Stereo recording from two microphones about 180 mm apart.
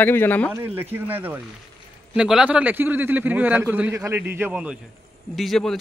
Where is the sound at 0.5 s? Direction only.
10° right (ahead or behind).